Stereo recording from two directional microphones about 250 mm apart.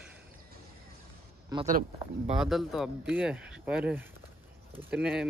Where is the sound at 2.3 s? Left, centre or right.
Centre.